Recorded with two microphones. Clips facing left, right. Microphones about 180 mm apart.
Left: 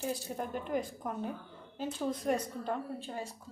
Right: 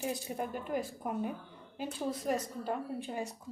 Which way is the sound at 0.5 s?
5° right (ahead or behind).